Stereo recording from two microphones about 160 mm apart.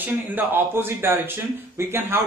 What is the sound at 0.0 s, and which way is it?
A man's voice, 10° right (ahead or behind).